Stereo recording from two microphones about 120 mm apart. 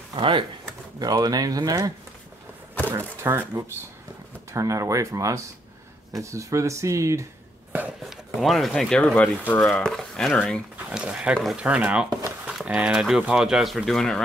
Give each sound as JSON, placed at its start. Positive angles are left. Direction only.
{"t": 0.1, "sound": "speech", "side_deg": -45}
{"t": 0.9, "sound": "speech", "side_deg": -35}
{"t": 2.9, "sound": "speech", "side_deg": -20}
{"t": 8.0, "sound": "speech", "side_deg": 0}
{"t": 10.9, "sound": "speech", "side_deg": -10}